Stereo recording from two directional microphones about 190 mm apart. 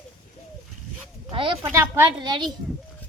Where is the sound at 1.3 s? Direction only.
25° right (ahead or behind).